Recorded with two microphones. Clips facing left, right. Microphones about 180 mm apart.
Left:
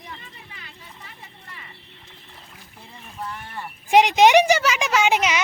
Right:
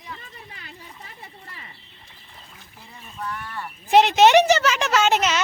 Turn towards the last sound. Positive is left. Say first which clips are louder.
# even
turn(degrees=10)  # may be behind; listen again after turning